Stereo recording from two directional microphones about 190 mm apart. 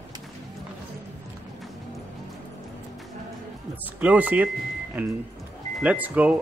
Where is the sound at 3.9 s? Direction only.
10° right (ahead or behind).